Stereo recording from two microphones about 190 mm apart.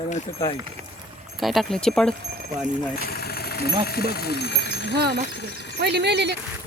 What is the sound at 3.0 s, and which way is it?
Engine, 55° left (ahead or behind).